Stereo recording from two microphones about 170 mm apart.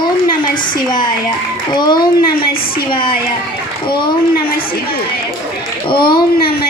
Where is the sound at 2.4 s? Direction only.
60° left (ahead or behind).